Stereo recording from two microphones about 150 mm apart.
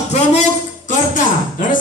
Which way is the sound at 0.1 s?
50° left (ahead or behind).